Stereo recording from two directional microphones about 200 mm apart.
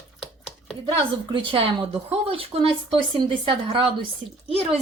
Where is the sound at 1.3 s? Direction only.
30° right (ahead or behind).